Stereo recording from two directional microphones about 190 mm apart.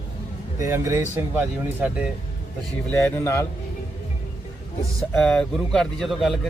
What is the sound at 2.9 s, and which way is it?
Speech, 15° left (ahead or behind).